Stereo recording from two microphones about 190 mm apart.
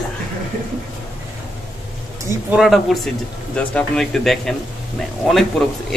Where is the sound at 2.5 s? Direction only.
Centre (ahead or behind).